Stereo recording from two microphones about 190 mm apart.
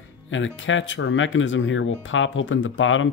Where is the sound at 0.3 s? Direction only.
90° left.